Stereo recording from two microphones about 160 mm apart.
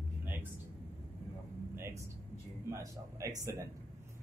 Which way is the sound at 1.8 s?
15° right (ahead or behind).